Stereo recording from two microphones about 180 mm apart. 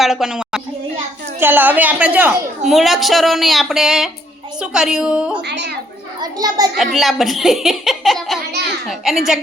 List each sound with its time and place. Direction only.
0.0 s a woman's voice: centre (ahead or behind)
5.4 s speech: 70° right (ahead or behind)
6.1 s a child's voice: 20° right (ahead or behind)
6.7 s a woman's voice: centre (ahead or behind)